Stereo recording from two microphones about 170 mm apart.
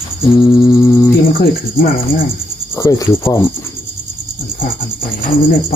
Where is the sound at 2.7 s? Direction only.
20° left (ahead or behind).